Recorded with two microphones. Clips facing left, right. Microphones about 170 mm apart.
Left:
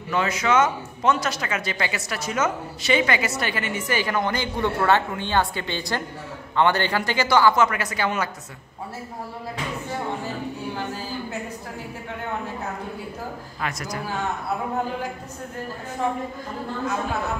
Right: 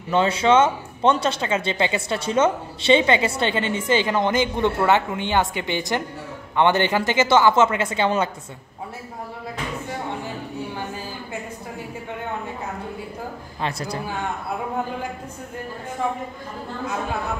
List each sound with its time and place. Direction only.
0.1 s speech: 30° right (ahead or behind)
13.6 s a woman's voice: 30° right (ahead or behind)